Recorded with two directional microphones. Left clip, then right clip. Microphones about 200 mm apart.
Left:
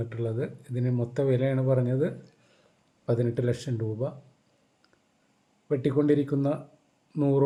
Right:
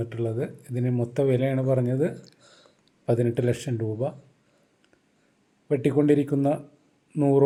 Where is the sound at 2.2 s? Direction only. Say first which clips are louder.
Right 4 dB; 40° right (ahead or behind).